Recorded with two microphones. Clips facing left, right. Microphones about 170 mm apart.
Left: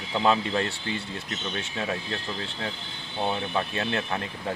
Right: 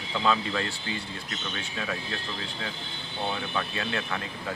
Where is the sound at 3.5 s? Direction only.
30° left (ahead or behind).